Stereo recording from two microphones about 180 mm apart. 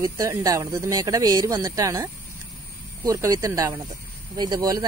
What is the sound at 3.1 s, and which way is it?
Speech, 15° right (ahead or behind).